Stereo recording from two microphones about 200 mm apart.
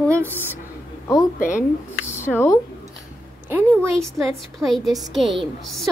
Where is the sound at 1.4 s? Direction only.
40° left (ahead or behind).